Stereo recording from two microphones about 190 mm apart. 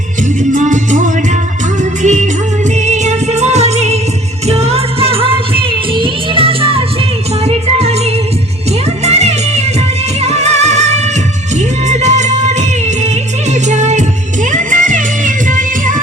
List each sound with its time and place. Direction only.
0.5 s salsa music: 40° right (ahead or behind)
1.8 s music: 40° right (ahead or behind)